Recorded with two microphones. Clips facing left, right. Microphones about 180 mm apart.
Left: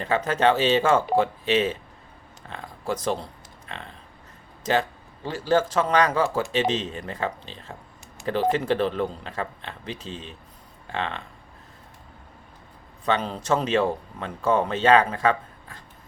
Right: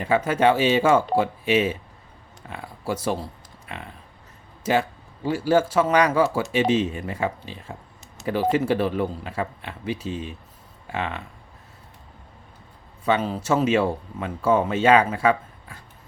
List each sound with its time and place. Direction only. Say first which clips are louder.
0.0 s speech: right 2 dB; 10° right (ahead or behind)
13.1 s speech: right 2 dB; 5° right (ahead or behind)